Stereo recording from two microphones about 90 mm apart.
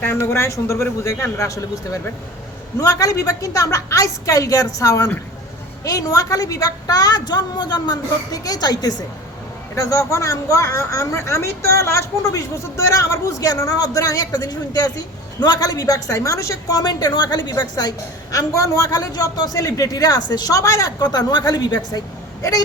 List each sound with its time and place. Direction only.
0.0 s a man's voice: 25° left (ahead or behind); by 22.0 s 45° left (ahead or behind)